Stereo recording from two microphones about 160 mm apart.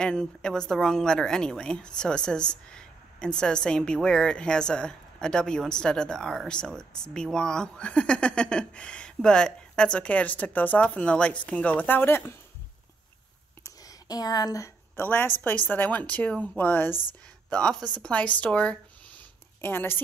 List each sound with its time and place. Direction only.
0.0 s a woman's voice: 5° left (ahead or behind)
13.7 s a sound: 25° left (ahead or behind)
15.7 s a woman's voice: 10° left (ahead or behind)